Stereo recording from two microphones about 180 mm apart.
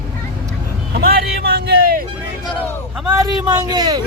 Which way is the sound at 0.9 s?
60° right (ahead or behind).